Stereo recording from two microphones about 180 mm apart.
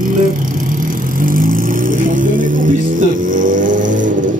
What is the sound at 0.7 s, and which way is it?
Vehicle, 50° right (ahead or behind).